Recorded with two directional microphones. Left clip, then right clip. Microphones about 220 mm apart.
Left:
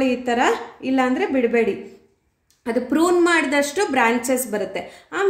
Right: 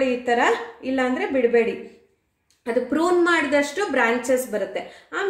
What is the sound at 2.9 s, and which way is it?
A woman's voice, 50° left (ahead or behind).